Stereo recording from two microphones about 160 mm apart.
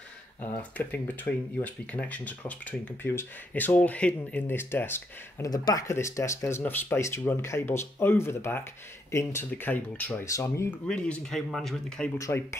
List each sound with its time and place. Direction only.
0.4 s speech: 10° left (ahead or behind)
10.9 s speech: 5° left (ahead or behind)
12.2 s speech: 15° left (ahead or behind)